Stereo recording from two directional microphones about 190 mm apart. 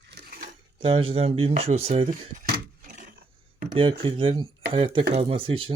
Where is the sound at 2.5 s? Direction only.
50° right (ahead or behind).